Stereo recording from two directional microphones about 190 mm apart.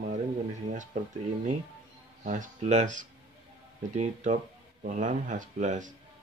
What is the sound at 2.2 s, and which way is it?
Speech, 40° right (ahead or behind).